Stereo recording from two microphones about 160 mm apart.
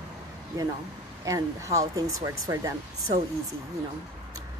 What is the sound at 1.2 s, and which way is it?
A woman's voice, 20° right (ahead or behind).